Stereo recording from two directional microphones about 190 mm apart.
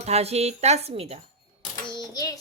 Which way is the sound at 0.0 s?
35° right (ahead or behind).